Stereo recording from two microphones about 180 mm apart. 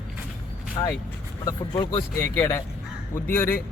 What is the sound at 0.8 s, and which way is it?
Speech, 20° left (ahead or behind).